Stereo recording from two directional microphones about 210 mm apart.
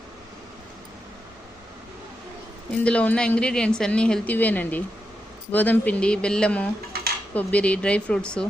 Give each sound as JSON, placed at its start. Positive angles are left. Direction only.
{"t": 2.8, "sound": "a woman's voice", "side_deg": 5}
{"t": 6.9, "sound": "dishes", "side_deg": -50}
{"t": 7.3, "sound": "a woman's voice", "side_deg": 5}